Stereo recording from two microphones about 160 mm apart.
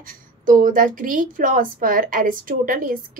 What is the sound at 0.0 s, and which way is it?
A woman's voice, 60° right (ahead or behind).